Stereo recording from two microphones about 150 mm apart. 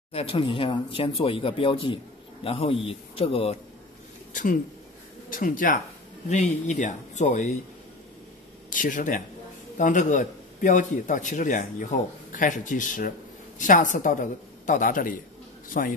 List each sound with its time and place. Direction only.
0.1 s speech: 40° left (ahead or behind)
4.3 s a man's voice: 60° left (ahead or behind)
6.2 s speech: 50° left (ahead or behind)
8.6 s a man's voice: 60° left (ahead or behind)